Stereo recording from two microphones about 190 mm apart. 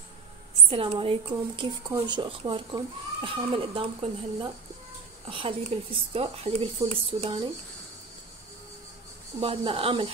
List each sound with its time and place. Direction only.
0.7 s speech: 30° right (ahead or behind)
9.4 s speech: 30° right (ahead or behind)